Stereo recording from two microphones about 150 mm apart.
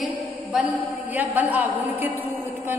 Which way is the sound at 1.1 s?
10° right (ahead or behind).